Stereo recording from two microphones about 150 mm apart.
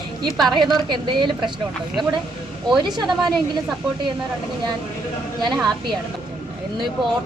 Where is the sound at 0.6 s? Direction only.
30° right (ahead or behind).